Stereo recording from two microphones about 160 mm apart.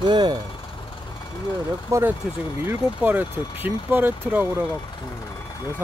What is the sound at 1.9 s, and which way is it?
Speech, 15° right (ahead or behind).